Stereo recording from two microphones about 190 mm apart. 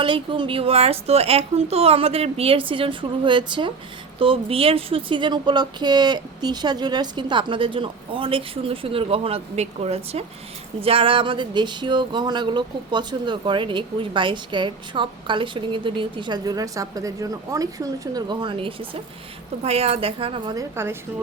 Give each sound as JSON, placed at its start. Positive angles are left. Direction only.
{"t": 0.0, "sound": "speech", "side_deg": -25}